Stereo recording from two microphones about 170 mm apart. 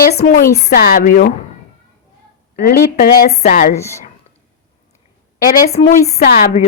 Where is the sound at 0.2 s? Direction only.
60° left (ahead or behind).